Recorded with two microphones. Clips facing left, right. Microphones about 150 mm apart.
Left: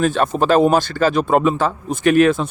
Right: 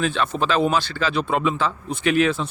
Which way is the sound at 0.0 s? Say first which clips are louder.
Left 6 dB; 45° left (ahead or behind).